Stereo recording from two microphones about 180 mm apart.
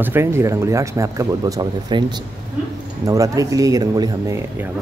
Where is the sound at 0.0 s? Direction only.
15° right (ahead or behind).